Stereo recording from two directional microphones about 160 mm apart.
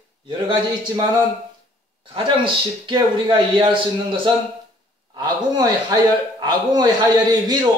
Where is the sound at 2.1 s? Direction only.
30° right (ahead or behind).